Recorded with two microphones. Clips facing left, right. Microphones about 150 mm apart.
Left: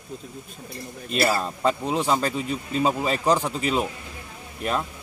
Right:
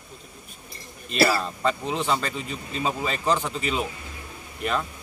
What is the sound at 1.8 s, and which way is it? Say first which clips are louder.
A man's voice: left 3 dB; 40° left (ahead or behind).